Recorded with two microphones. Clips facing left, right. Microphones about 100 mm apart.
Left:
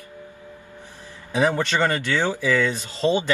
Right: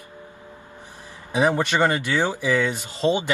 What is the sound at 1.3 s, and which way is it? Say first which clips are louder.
Speech: right 1 dB; 15° right (ahead or behind).